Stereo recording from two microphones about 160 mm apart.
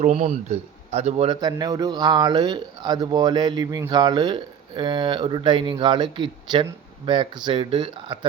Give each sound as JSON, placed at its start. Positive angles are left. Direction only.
{"t": 0.0, "sound": "speech", "side_deg": -45}
{"t": 1.4, "sound": "speech", "side_deg": -25}